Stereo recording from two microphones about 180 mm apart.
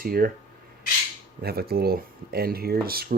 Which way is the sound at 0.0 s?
55° right (ahead or behind).